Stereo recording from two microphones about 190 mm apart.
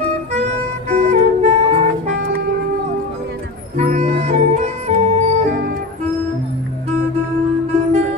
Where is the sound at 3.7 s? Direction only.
35° right (ahead or behind).